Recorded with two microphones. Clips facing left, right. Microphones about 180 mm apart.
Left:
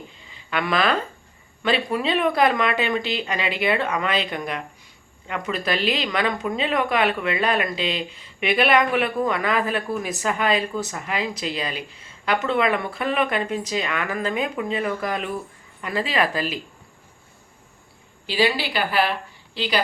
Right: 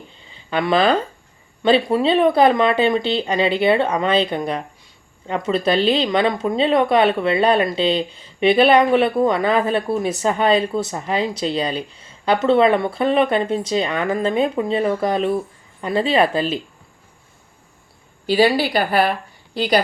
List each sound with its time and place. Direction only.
0.3 s speech: 30° right (ahead or behind)
18.3 s a woman's voice: 45° right (ahead or behind)